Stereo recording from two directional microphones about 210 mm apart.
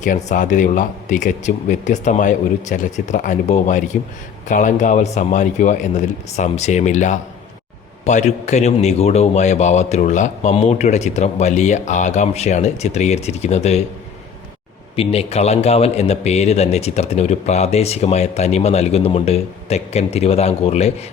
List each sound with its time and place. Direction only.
0.0 s a man's voice: 35° left (ahead or behind)
14.9 s a man's voice: 30° left (ahead or behind)